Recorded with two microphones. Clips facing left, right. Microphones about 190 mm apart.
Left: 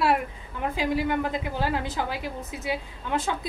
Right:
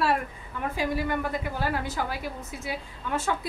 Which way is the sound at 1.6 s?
15° left (ahead or behind).